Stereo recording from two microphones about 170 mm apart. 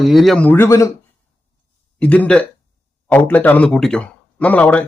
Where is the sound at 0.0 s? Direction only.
Centre (ahead or behind); by 0.9 s 15° left (ahead or behind).